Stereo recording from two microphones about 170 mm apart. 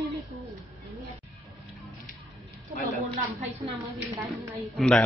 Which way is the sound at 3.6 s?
15° right (ahead or behind).